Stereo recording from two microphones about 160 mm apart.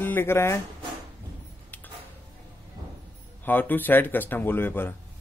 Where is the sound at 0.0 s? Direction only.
15° left (ahead or behind).